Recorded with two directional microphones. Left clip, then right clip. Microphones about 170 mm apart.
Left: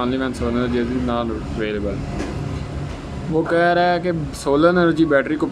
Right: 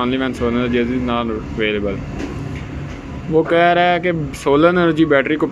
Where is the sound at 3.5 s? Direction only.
5° right (ahead or behind).